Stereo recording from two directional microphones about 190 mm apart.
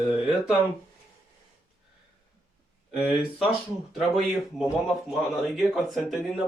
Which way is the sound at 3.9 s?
Centre (ahead or behind).